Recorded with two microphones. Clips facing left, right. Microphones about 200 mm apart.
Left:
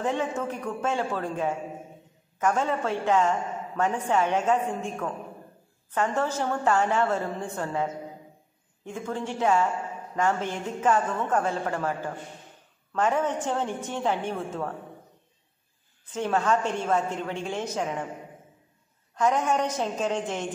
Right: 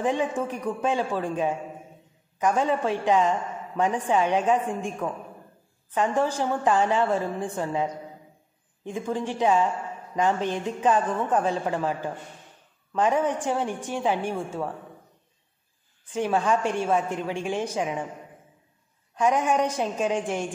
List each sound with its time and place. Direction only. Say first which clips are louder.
0.0 s a woman's voice: right 2 dB; 15° right (ahead or behind)
16.1 s a woman's voice: right 1 dB; 10° right (ahead or behind)
19.1 s a woman's voice: right 2 dB; 10° right (ahead or behind)